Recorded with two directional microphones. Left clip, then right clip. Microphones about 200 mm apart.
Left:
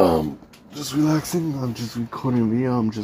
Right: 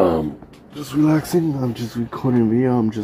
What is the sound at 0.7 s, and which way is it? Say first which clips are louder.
Speech: right 3 dB; 10° left (ahead or behind).